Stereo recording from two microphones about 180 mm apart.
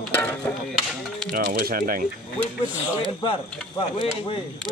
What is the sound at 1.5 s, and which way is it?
Speech, 55° right (ahead or behind).